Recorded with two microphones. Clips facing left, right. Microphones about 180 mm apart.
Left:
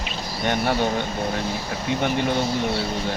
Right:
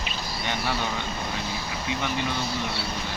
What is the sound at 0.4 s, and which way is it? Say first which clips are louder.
Speech: left 8 dB; 50° left (ahead or behind).